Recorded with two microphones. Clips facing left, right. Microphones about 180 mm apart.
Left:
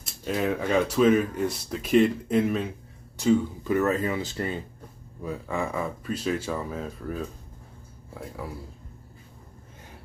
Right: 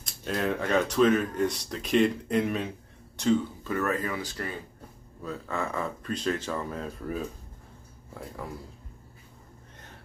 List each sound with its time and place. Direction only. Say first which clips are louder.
0.0 s speech: left 2 dB; 5° left (ahead or behind)
3.2 s speech: left 3 dB; 10° left (ahead or behind)
5.2 s speech: left 3 dB; 15° left (ahead or behind)